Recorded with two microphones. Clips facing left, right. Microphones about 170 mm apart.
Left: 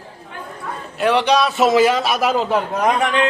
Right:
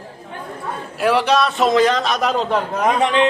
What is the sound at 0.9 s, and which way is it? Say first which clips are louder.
A man's voice: even; 5° right (ahead or behind).